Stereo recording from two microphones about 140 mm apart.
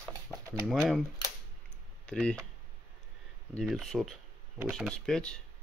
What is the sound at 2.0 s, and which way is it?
Speech, 5° left (ahead or behind).